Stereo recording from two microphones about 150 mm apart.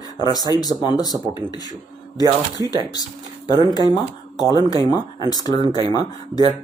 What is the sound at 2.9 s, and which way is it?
Speech, 25° left (ahead or behind).